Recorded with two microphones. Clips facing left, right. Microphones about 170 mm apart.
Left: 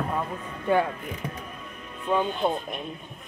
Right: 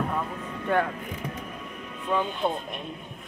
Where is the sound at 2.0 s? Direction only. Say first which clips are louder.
Left 2 dB; 15° left (ahead or behind).